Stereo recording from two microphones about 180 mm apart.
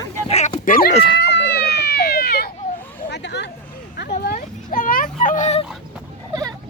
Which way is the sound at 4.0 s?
60° left (ahead or behind).